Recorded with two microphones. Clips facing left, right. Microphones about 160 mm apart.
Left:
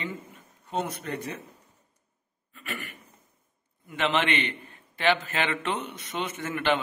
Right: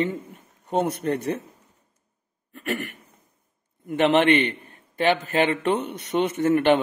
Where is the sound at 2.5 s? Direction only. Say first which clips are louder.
Right 10 dB; 70° right (ahead or behind).